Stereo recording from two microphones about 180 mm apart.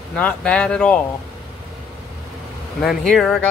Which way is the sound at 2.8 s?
Centre (ahead or behind).